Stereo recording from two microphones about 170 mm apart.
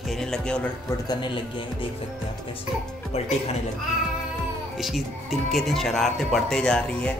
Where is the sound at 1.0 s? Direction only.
30° left (ahead or behind).